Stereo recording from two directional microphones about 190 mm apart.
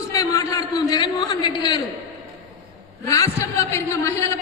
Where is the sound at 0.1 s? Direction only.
15° left (ahead or behind).